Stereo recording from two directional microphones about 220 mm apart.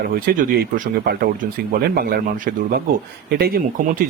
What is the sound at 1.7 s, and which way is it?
A man's voice, 45° right (ahead or behind).